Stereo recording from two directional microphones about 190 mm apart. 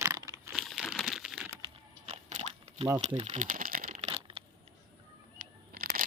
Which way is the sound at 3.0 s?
35° right (ahead or behind).